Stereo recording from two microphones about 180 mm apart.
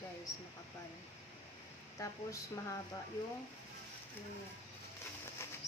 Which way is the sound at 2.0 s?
15° left (ahead or behind).